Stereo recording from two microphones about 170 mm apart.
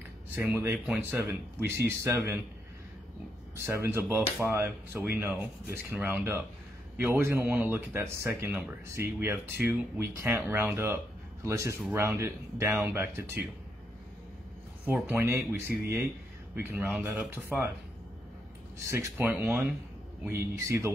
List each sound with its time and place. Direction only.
0.5 s speech: 10° right (ahead or behind)
3.5 s speech: 15° right (ahead or behind)
14.9 s speech: 10° right (ahead or behind)
18.9 s speech: 15° right (ahead or behind)